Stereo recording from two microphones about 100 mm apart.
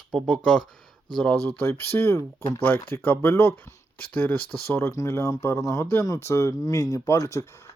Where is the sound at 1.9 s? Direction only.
25° left (ahead or behind).